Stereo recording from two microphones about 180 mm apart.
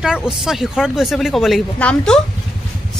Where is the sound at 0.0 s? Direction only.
5° right (ahead or behind).